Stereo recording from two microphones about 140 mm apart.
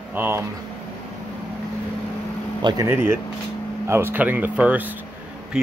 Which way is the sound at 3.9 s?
15° right (ahead or behind).